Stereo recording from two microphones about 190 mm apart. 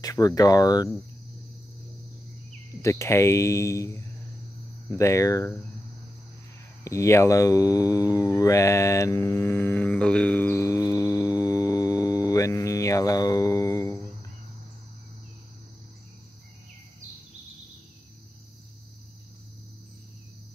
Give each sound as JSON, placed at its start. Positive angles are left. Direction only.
{"t": 0.0, "sound": "speech", "side_deg": 20}
{"t": 2.8, "sound": "speech", "side_deg": 15}
{"t": 6.8, "sound": "speech", "side_deg": 15}